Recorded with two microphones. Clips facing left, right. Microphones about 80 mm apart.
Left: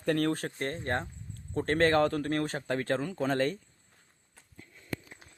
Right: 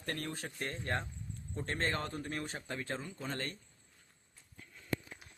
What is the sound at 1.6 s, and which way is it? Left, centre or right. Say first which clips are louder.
Speech: left 12 dB; left.